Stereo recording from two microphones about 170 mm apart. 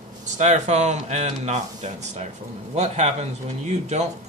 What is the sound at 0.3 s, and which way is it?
A man's voice, 45° right (ahead or behind).